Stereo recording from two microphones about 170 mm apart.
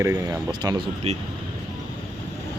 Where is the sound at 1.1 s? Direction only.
40° right (ahead or behind).